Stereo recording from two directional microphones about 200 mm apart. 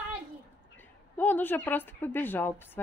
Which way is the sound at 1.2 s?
10° left (ahead or behind).